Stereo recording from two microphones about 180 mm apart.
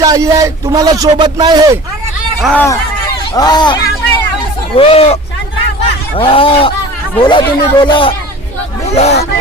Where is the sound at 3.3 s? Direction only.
20° left (ahead or behind).